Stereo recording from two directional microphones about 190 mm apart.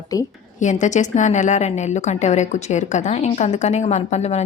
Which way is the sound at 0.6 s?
40° left (ahead or behind).